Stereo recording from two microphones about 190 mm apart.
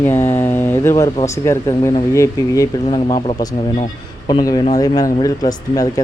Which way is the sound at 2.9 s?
30° left (ahead or behind).